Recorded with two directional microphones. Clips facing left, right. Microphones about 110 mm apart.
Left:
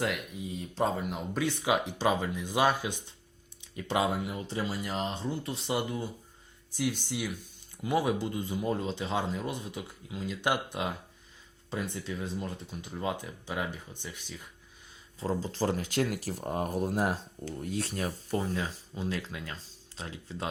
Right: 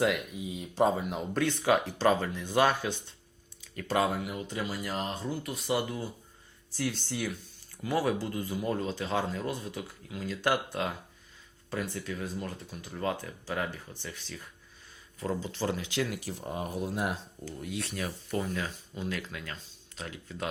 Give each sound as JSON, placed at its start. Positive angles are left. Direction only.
{"t": 0.0, "sound": "speech", "side_deg": 0}
{"t": 15.2, "sound": "speech", "side_deg": 30}